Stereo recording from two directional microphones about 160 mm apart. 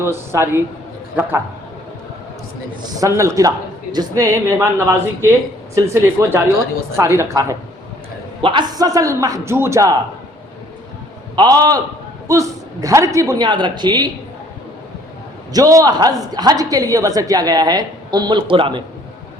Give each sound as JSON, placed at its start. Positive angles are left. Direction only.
{"t": 0.0, "sound": "a man's voice", "side_deg": -15}
{"t": 3.0, "sound": "a woman's voice", "side_deg": -20}
{"t": 8.4, "sound": "a woman's voice", "side_deg": -30}
{"t": 11.3, "sound": "a woman's voice", "side_deg": -25}
{"t": 15.5, "sound": "a woman's voice", "side_deg": -20}